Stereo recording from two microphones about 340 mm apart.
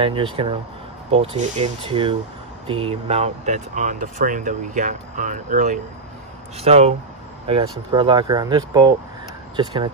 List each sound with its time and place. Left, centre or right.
0.0 s speech: centre